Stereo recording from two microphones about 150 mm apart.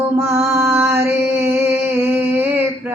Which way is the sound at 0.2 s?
15° right (ahead or behind).